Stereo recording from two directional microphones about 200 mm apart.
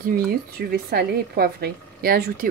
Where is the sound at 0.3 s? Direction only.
50° right (ahead or behind).